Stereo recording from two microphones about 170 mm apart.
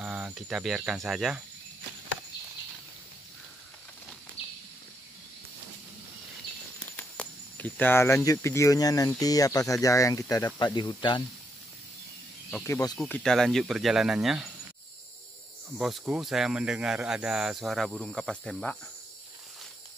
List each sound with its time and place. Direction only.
0.0 s speech: 5° right (ahead or behind)
4.4 s a sound: 35° left (ahead or behind)
7.0 s speech: 10° left (ahead or behind); by 11.2 s 25° left (ahead or behind)
12.6 s speech: 20° left (ahead or behind)
13.0 s speech: 5° left (ahead or behind)
15.8 s speech: centre (ahead or behind)